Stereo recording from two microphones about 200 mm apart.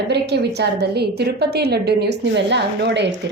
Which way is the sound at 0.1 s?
55° right (ahead or behind).